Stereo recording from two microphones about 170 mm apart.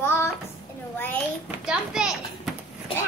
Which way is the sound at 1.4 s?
5° right (ahead or behind).